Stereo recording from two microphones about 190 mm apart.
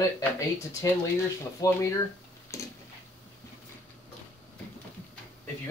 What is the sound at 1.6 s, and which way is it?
Speech, 20° left (ahead or behind).